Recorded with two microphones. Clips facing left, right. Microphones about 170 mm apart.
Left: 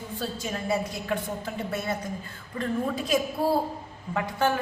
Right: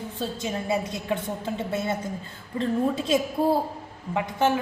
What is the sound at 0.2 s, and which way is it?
A man's voice, 20° right (ahead or behind).